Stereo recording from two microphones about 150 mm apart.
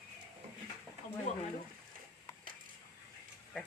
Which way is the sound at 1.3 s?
55° left (ahead or behind).